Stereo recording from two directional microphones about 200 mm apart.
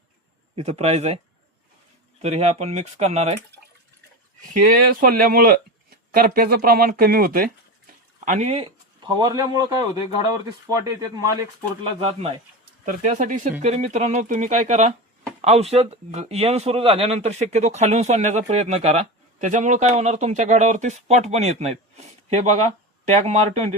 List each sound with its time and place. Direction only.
0.5 s speech: 35° right (ahead or behind)
2.2 s speech: 30° right (ahead or behind)
4.4 s speech: 40° right (ahead or behind)
8.2 s speech: 35° right (ahead or behind)
12.8 s speech: 40° right (ahead or behind)